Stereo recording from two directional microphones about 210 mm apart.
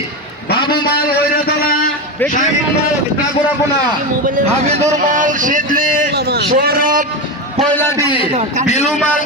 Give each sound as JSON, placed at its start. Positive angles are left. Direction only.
{"t": 0.6, "sound": "a sound", "side_deg": 20}
{"t": 4.4, "sound": "a man's voice", "side_deg": -30}
{"t": 8.0, "sound": "a man's voice", "side_deg": 25}
{"t": 8.3, "sound": "a man's voice", "side_deg": -35}
{"t": 8.6, "sound": "a man's voice", "side_deg": 30}